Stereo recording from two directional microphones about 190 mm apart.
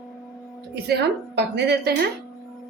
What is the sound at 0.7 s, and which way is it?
A woman's voice, 60° right (ahead or behind).